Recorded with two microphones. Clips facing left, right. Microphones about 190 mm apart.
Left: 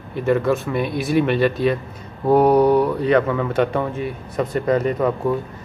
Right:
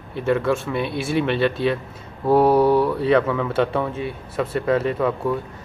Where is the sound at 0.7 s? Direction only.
45° left (ahead or behind).